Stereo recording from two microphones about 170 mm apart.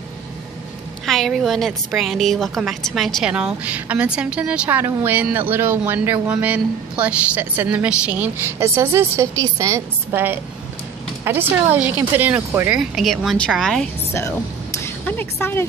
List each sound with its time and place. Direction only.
1.0 s a woman's voice: centre (ahead or behind)
14.8 s speech: 10° left (ahead or behind)